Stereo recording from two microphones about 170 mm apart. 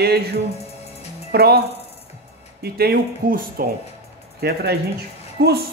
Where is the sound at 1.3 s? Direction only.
65° right (ahead or behind).